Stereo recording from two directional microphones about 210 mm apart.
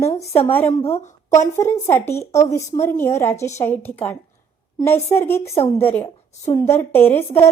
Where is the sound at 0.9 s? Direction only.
30° left (ahead or behind).